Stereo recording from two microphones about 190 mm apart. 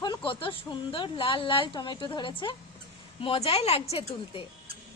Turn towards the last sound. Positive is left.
turn(degrees=30)  # may be behind; listen again after turning